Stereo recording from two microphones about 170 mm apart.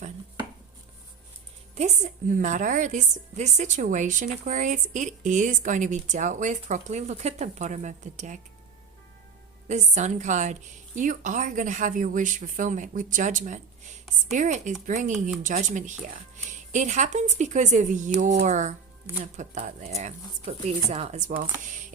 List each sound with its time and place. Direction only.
1.7 s a woman's voice: 45° right (ahead or behind)
9.6 s a woman's voice: 45° right (ahead or behind)